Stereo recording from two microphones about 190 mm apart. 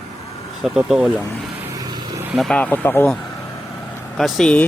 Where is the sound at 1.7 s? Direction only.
20° right (ahead or behind).